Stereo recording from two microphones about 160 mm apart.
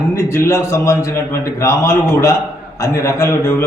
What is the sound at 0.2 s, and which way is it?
A man's voice, 20° left (ahead or behind).